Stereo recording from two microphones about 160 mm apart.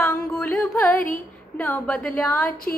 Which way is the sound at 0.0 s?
15° left (ahead or behind).